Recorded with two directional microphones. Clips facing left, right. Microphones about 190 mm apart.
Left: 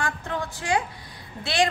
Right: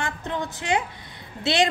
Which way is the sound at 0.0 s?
20° right (ahead or behind).